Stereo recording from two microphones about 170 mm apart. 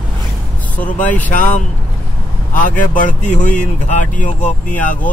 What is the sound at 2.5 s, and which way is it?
Speech, 50° left (ahead or behind).